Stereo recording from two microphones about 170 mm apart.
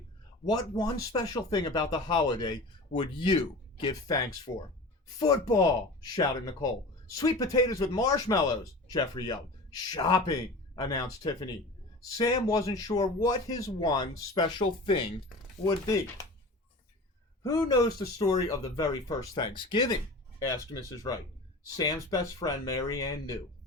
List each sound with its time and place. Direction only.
0.5 s speech: 20° left (ahead or behind)
17.4 s speech: 20° left (ahead or behind)